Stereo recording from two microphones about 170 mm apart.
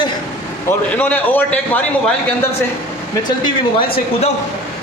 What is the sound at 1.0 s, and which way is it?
Speech, 10° left (ahead or behind).